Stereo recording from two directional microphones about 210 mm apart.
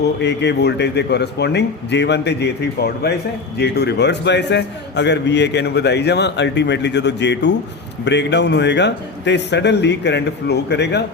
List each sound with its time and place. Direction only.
0.0 s a man's voice: 55° left (ahead or behind)